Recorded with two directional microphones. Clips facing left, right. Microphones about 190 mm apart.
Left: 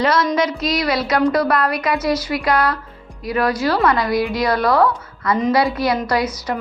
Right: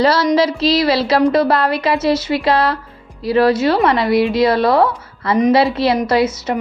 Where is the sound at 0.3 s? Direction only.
30° right (ahead or behind).